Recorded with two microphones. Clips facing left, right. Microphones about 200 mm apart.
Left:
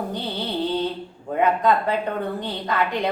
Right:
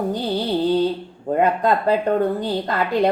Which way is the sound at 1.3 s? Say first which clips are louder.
Right 2 dB; 35° right (ahead or behind).